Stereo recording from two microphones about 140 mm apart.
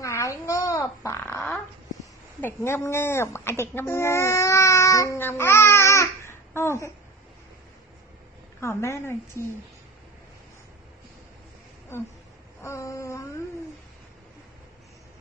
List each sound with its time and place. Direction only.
0.0 s babbling: 20° left (ahead or behind)
2.4 s speech: 20° left (ahead or behind)
8.5 s a woman's voice: 20° left (ahead or behind)
12.6 s a woman's voice: 20° left (ahead or behind)